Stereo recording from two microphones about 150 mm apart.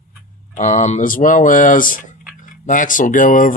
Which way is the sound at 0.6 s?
50° left (ahead or behind).